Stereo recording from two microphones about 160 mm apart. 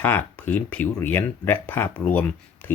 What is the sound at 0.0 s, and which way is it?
Speech, 10° left (ahead or behind).